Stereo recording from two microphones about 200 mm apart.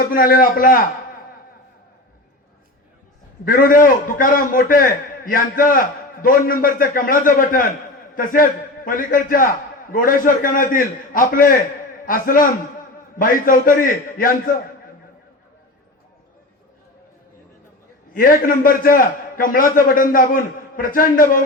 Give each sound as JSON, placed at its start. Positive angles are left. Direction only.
{"t": 0.0, "sound": "a man's voice", "side_deg": 45}
{"t": 3.4, "sound": "a man's voice", "side_deg": 45}
{"t": 18.1, "sound": "a man's voice", "side_deg": 45}